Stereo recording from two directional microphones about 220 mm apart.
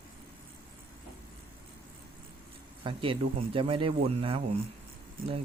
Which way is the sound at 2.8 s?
25° right (ahead or behind).